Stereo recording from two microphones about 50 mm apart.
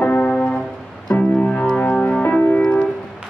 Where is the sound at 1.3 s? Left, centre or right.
Left.